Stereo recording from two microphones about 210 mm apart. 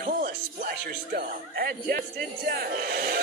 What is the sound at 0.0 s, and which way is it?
A man's voice, 45° right (ahead or behind).